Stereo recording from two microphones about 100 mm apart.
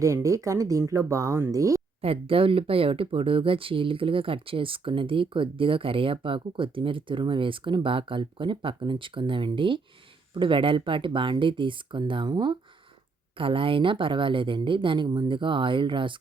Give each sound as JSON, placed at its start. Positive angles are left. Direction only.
{"t": 0.0, "sound": "speech", "side_deg": -30}
{"t": 2.0, "sound": "speech", "side_deg": -70}
{"t": 13.3, "sound": "speech", "side_deg": -60}